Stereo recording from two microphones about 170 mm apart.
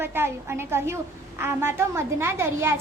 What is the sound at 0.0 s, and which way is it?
A woman's voice, 15° right (ahead or behind).